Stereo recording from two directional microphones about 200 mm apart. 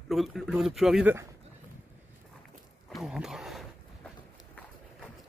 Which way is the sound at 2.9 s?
Centre (ahead or behind).